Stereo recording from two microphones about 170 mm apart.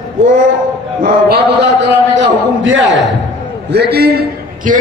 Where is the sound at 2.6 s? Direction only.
90° right.